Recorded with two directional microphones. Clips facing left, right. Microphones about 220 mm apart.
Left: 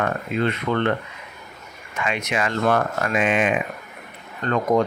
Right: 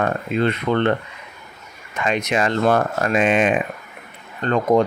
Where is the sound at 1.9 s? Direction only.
35° right (ahead or behind).